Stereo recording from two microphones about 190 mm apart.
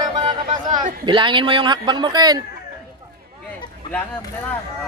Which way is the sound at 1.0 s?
25° right (ahead or behind).